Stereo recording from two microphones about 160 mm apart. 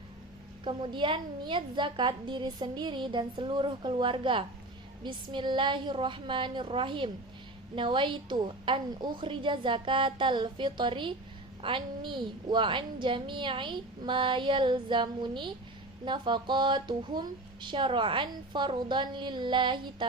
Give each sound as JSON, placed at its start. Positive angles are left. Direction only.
{"t": 0.6, "sound": "a woman's voice", "side_deg": -30}